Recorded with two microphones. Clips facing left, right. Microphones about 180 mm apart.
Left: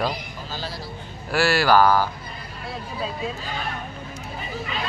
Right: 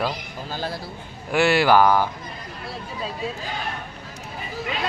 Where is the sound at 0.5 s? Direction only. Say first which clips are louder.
Right 4 dB; 55° right (ahead or behind).